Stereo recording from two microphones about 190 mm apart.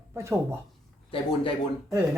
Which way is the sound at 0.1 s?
15° right (ahead or behind).